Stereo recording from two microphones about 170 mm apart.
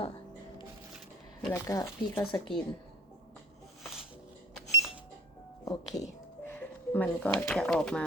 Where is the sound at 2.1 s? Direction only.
5° left (ahead or behind).